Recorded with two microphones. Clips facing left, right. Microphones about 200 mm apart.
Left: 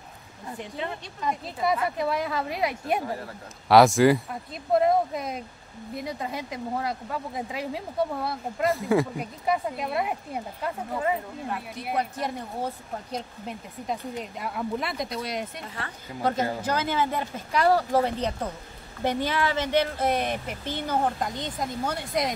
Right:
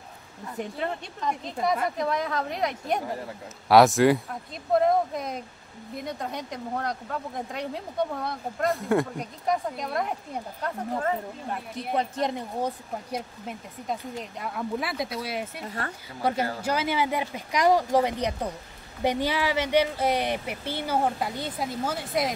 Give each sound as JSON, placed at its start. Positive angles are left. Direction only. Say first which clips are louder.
{"t": 1.2, "sound": "speech", "louder": "even", "side_deg": 5}
{"t": 12.0, "sound": "speech", "louder": "right 2 dB", "side_deg": -20}
{"t": 13.1, "sound": "speech", "louder": "even", "side_deg": 0}